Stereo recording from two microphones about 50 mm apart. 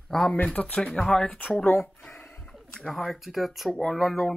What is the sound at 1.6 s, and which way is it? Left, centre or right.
Speech, left.